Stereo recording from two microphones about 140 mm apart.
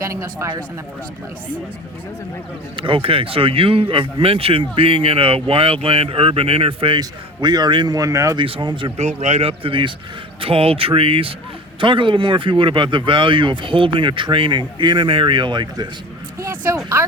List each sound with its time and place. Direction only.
0.0 s a man's voice: 20° right (ahead or behind)
2.7 s speech: 40° right (ahead or behind)
7.0 s a man's voice: 30° right (ahead or behind)
8.4 s speech: 40° right (ahead or behind)
9.0 s speech: 55° right (ahead or behind); by 15.9 s 35° right (ahead or behind)
16.4 s speech: 20° right (ahead or behind)